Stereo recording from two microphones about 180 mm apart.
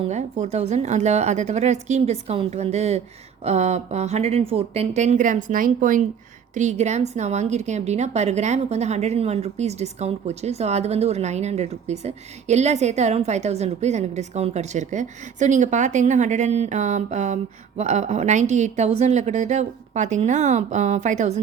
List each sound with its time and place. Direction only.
0.0 s a woman's voice: 40° right (ahead or behind)